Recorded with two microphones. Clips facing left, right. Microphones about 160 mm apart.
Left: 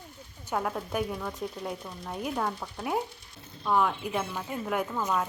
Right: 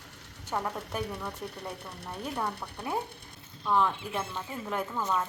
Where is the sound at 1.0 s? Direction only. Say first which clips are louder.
Left 3 dB; 70° right (ahead or behind).